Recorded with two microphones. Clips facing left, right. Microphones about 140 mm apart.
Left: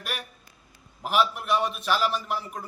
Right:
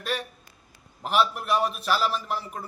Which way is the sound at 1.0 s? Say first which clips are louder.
Even; centre (ahead or behind).